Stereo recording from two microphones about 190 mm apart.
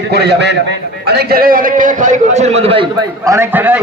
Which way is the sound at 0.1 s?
60° right (ahead or behind).